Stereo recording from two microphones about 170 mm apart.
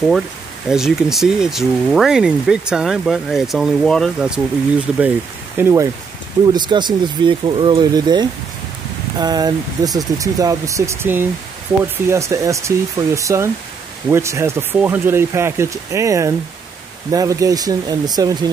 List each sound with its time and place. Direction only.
0.7 s speech: 5° right (ahead or behind)
6.5 s speech: 25° right (ahead or behind)